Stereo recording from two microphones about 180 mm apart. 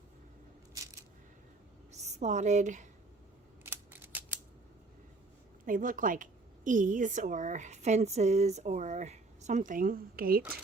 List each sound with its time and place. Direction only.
1.9 s a woman's voice: 40° right (ahead or behind)
3.6 s scissors: 10° right (ahead or behind)
5.6 s a woman's voice: 50° right (ahead or behind)